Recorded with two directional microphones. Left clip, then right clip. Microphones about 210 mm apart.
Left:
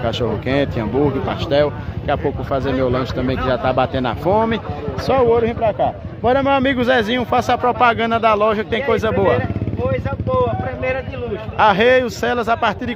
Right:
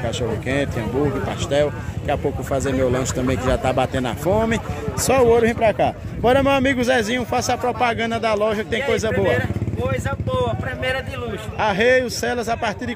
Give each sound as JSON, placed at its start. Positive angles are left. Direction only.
{"t": 0.5, "sound": "speech", "side_deg": 10}
{"t": 5.0, "sound": "speech", "side_deg": -15}
{"t": 6.3, "sound": "speech", "side_deg": -5}
{"t": 10.4, "sound": "speech", "side_deg": -15}
{"t": 11.5, "sound": "speech", "side_deg": 5}